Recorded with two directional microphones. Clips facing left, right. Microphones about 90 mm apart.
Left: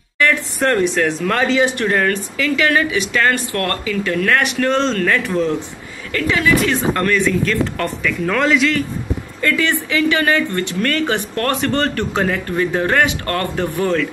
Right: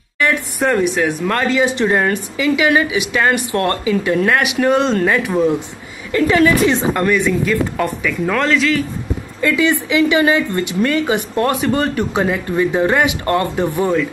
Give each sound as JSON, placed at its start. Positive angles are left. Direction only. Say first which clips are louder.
{"t": 0.2, "sound": "speech", "louder": "even", "side_deg": -10}
{"t": 1.7, "sound": "speech", "louder": "right 2 dB", "side_deg": -20}
{"t": 4.4, "sound": "speech", "louder": "right 2 dB", "side_deg": -10}
{"t": 6.2, "sound": "a woman's voice", "louder": "right 5 dB", "side_deg": -35}
{"t": 6.6, "sound": "speech", "louder": "right 2 dB", "side_deg": -15}
{"t": 9.4, "sound": "speech", "louder": "right 3 dB", "side_deg": -15}